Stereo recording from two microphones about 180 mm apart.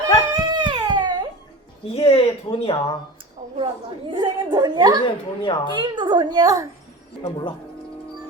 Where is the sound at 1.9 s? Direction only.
30° left (ahead or behind).